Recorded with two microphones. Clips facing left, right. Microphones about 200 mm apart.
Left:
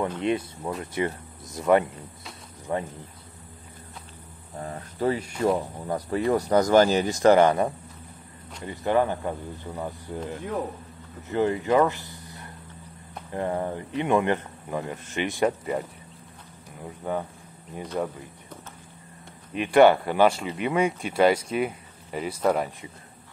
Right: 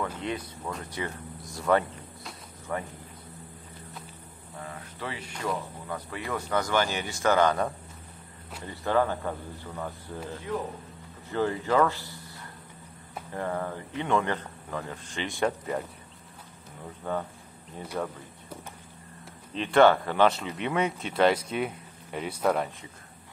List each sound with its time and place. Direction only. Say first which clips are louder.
0.2 s speech: left 7 dB; 25° left (ahead or behind)
4.6 s cricket: left 8 dB; 40° left (ahead or behind)
5.4 s speech: left 7 dB; 40° left (ahead or behind)
7.3 s speech: left 5 dB; 25° left (ahead or behind)
15.4 s speech: left 3 dB; 5° left (ahead or behind)
17.1 s speech: left 2 dB; 10° left (ahead or behind)
19.5 s speech: left 3 dB; 15° left (ahead or behind)